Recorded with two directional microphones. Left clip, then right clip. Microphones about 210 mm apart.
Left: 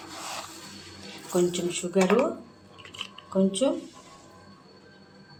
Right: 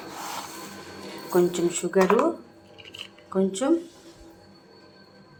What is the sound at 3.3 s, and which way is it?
Speech, 15° right (ahead or behind).